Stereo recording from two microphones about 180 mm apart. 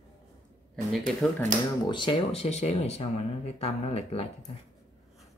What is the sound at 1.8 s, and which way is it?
Speech, 25° left (ahead or behind).